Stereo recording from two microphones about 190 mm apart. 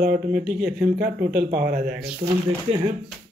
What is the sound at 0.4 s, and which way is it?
Speech, 55° right (ahead or behind).